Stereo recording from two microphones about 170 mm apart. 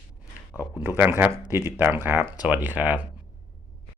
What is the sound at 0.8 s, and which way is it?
Speech, 10° right (ahead or behind).